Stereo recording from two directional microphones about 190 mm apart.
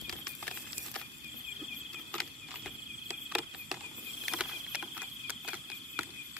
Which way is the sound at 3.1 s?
5° right (ahead or behind).